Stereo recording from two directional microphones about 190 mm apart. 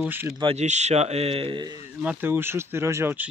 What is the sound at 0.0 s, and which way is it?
Speech, 10° right (ahead or behind).